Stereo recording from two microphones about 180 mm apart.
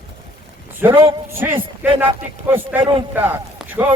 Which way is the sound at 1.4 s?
10° right (ahead or behind).